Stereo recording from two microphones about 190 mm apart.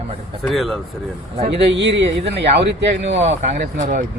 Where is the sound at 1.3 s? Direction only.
35° right (ahead or behind).